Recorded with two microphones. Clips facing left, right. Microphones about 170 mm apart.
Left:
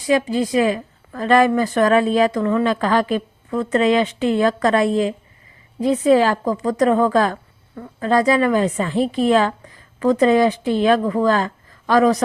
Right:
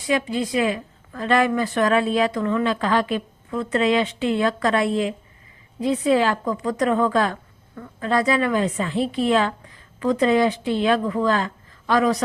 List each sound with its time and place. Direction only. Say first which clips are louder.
0.1 s a woman's voice: left 5 dB; 40° left (ahead or behind)